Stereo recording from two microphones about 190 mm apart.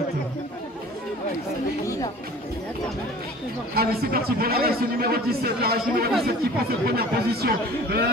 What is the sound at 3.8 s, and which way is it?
A man's voice, 55° right (ahead or behind).